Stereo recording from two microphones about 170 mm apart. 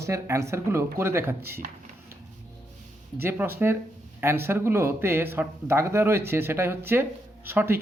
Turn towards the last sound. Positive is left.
turn(degrees=-15)  # may be behind; listen again after turning